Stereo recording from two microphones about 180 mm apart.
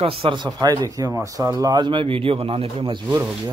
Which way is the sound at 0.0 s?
30° right (ahead or behind).